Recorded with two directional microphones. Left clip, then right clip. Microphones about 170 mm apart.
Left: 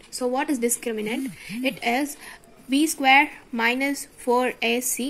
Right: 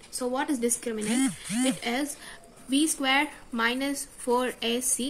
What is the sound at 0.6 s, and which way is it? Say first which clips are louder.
Speech: left 4 dB; 30° left (ahead or behind).